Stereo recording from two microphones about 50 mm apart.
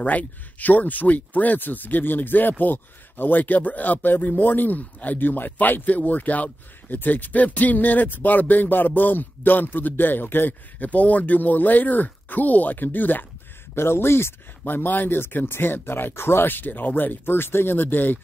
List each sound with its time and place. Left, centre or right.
0.0 s speech: left
13.7 s speech: left
14.6 s speech: left